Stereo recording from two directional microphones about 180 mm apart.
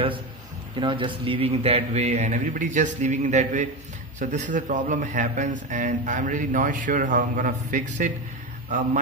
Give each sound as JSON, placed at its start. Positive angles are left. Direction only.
{"t": 0.7, "sound": "a man's voice", "side_deg": -25}